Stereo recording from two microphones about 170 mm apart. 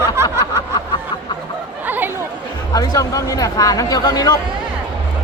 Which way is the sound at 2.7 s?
20° left (ahead or behind).